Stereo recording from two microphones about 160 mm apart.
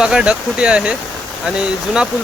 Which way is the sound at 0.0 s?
5° right (ahead or behind).